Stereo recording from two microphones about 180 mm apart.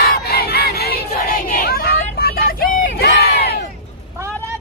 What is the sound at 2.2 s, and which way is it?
Crowd, 55° left (ahead or behind).